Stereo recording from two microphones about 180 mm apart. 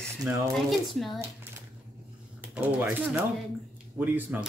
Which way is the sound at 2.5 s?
10° right (ahead or behind).